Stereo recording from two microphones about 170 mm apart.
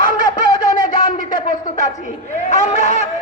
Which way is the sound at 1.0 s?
50° left (ahead or behind).